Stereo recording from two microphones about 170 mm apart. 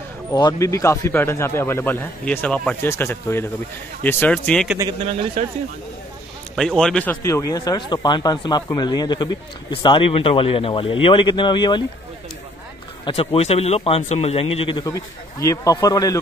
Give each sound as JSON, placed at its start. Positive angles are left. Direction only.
{"t": 0.3, "sound": "speech", "side_deg": 20}
{"t": 6.5, "sound": "a man's voice", "side_deg": 0}
{"t": 7.2, "sound": "speech", "side_deg": 20}
{"t": 13.0, "sound": "speech", "side_deg": 30}